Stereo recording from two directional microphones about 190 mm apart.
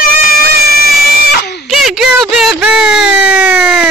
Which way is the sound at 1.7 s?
Centre (ahead or behind).